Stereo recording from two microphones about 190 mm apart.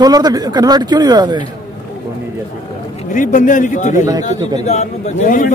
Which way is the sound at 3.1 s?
40° left (ahead or behind).